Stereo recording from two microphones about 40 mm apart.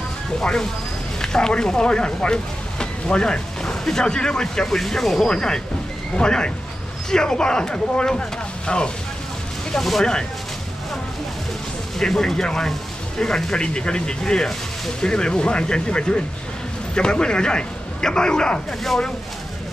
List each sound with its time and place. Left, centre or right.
0.4 s speech: centre
4.6 s speech: centre
5.3 s speech: centre
9.8 s speech: centre
12.0 s a man's voice: centre